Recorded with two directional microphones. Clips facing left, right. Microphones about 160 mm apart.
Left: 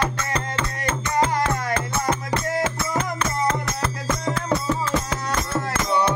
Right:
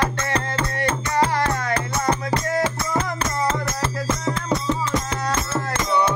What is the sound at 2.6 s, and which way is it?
Music, 35° right (ahead or behind).